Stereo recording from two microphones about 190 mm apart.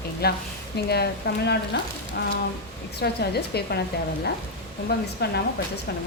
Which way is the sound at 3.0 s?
60° left (ahead or behind).